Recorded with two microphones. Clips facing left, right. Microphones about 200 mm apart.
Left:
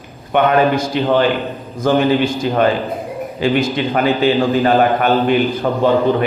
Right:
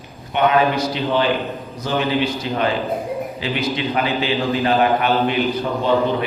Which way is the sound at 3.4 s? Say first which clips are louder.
Left 10 dB; 45° left (ahead or behind).